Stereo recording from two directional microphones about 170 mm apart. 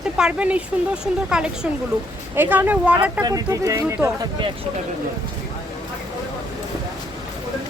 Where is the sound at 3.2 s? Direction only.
20° right (ahead or behind).